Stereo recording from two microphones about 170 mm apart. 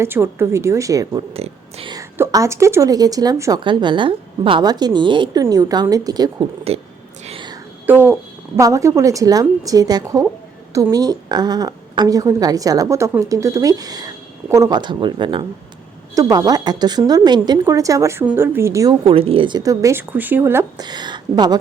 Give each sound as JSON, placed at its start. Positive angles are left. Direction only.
{"t": 0.0, "sound": "a woman's voice", "side_deg": -15}
{"t": 1.3, "sound": "speech", "side_deg": -35}
{"t": 1.9, "sound": "a woman's voice", "side_deg": -15}
{"t": 7.3, "sound": "whispering", "side_deg": -30}
{"t": 7.9, "sound": "a woman's voice", "side_deg": -10}
{"t": 19.0, "sound": "a woman's voice", "side_deg": -35}
{"t": 20.8, "sound": "speech", "side_deg": -25}